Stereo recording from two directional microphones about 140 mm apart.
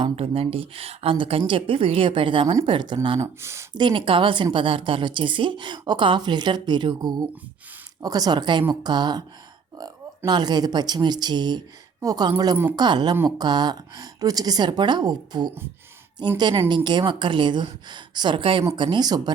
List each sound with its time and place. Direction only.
0.2 s a woman's voice: 45° right (ahead or behind)
3.2 s speech: 20° right (ahead or behind)
3.8 s a woman's voice: 35° right (ahead or behind)